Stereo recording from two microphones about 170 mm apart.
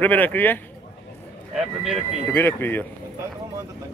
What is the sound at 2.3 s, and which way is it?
Speech, 15° left (ahead or behind).